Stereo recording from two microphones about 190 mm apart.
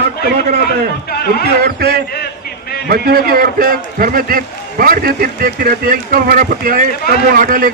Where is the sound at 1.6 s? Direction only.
55° right (ahead or behind).